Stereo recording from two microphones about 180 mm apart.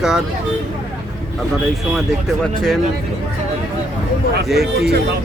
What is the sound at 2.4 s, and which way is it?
Speech, centre (ahead or behind).